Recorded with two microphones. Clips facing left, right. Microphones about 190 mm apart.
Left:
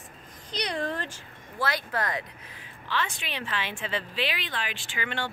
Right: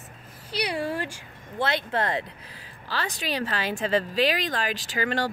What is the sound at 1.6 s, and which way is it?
Speech, 25° right (ahead or behind).